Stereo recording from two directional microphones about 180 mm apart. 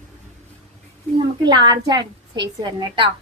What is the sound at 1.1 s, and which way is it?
A woman's voice, 25° right (ahead or behind).